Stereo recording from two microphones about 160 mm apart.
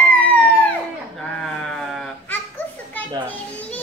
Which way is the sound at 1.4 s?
5° left (ahead or behind).